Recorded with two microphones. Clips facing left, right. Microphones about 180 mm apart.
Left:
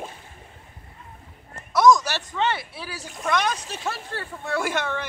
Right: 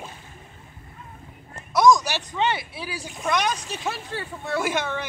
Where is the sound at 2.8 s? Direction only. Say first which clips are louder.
Right 1 dB; 10° right (ahead or behind).